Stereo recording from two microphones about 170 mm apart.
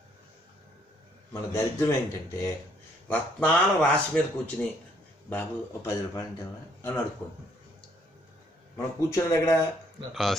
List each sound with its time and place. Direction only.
1.3 s a man's voice: 15° left (ahead or behind)
8.7 s a man's voice: 15° left (ahead or behind)